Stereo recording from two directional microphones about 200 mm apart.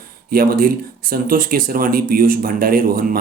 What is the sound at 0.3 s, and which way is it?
Speech, 45° right (ahead or behind).